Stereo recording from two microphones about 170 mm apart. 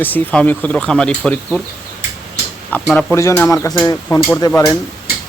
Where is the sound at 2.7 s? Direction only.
5° left (ahead or behind).